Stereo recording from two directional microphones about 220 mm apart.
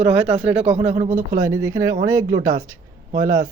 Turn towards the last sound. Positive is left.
turn(degrees=-15)  # may be behind; listen again after turning